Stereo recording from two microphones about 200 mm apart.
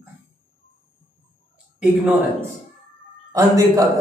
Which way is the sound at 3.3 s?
15° right (ahead or behind).